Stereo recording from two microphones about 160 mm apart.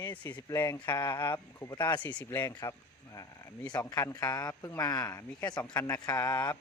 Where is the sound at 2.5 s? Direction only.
20° left (ahead or behind).